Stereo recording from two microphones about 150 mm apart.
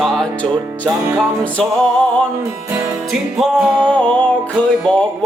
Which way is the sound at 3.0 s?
Centre (ahead or behind).